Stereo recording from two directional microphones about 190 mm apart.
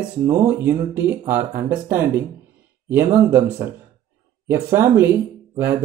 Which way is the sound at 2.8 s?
15° right (ahead or behind).